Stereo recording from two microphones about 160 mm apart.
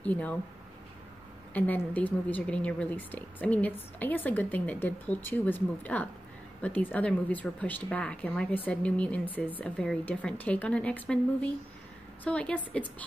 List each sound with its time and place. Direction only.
0.0 s a woman's voice: 10° left (ahead or behind)
1.5 s a woman's voice: 10° left (ahead or behind)